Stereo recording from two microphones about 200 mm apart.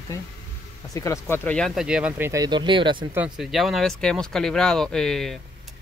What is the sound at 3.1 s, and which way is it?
Speech, 5° right (ahead or behind).